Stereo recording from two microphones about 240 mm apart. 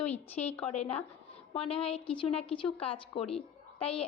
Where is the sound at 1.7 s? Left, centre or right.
Left.